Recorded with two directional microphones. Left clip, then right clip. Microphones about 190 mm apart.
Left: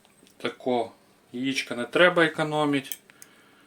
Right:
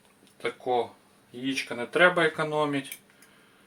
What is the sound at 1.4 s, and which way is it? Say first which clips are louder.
Speech: left 2 dB; 45° left (ahead or behind).